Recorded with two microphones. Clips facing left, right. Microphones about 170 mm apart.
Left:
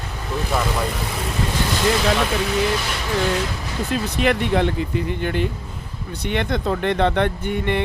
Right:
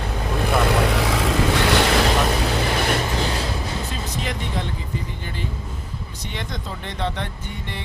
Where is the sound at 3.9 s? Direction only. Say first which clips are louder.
Left 8 dB; 65° left (ahead or behind).